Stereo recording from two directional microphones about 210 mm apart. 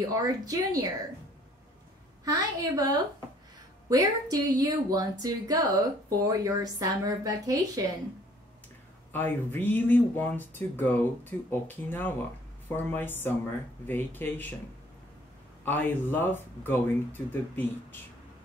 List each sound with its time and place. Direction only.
0.0 s a woman's voice: 15° right (ahead or behind)
2.2 s a woman's voice: 15° right (ahead or behind)
9.1 s speech: 10° left (ahead or behind)
15.6 s speech: 10° left (ahead or behind)